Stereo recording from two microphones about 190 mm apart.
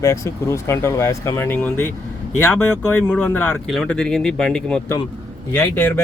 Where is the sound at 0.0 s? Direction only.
15° left (ahead or behind).